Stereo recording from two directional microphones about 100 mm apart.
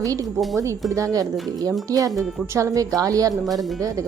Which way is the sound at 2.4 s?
30° right (ahead or behind).